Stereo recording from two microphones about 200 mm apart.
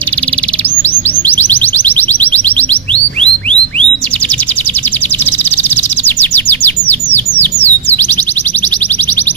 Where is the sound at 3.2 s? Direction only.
5° left (ahead or behind).